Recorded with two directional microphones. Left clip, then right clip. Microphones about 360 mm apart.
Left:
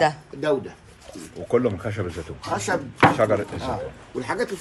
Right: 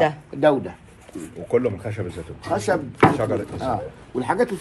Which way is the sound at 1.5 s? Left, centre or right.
Left.